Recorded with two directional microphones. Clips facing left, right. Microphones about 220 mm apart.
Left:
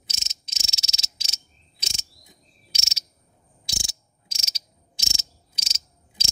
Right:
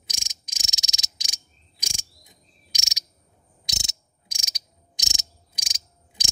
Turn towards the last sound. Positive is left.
turn(degrees=-15)  # may be behind; listen again after turning